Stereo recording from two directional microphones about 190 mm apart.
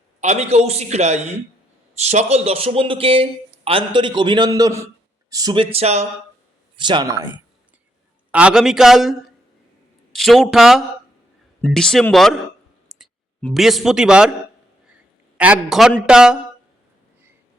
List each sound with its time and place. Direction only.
0.2 s speech: 35° right (ahead or behind); by 5.6 s 20° right (ahead or behind)
5.7 s speech: 35° right (ahead or behind)
6.7 s a man's voice: 25° right (ahead or behind); by 14.3 s 5° right (ahead or behind)
15.4 s a man's voice: 5° right (ahead or behind)